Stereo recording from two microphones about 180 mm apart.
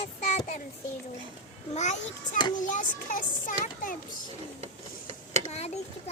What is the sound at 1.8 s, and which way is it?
A child's voice, 40° left (ahead or behind).